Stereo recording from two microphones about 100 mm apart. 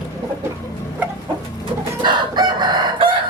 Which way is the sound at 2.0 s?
45° right (ahead or behind).